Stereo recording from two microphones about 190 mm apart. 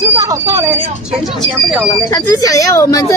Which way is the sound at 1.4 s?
5° left (ahead or behind).